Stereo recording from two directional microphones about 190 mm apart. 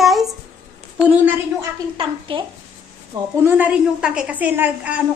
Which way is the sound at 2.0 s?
25° right (ahead or behind).